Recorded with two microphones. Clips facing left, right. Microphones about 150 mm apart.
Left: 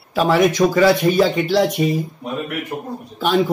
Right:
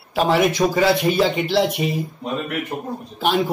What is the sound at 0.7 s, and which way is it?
Speech, 45° left (ahead or behind).